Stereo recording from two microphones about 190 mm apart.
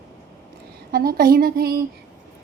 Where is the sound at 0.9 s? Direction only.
50° right (ahead or behind).